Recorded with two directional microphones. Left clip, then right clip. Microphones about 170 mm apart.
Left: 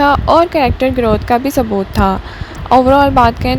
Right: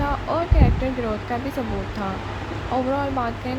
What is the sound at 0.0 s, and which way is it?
Speech, 60° left (ahead or behind).